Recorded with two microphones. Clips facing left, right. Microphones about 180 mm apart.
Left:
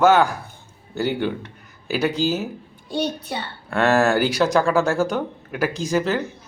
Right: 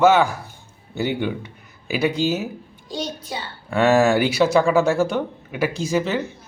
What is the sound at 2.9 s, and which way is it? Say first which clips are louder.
Speech: left 4 dB; 60° left (ahead or behind).